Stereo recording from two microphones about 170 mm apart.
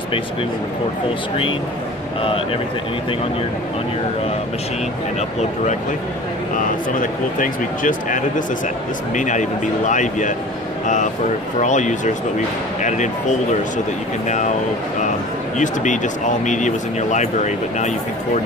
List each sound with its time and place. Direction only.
7.0 s speech: 50° left (ahead or behind)
11.6 s speech: 45° left (ahead or behind)
15.5 s speech: 45° left (ahead or behind)